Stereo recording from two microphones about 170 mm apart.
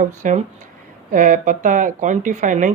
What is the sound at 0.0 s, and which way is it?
Speech, 45° right (ahead or behind).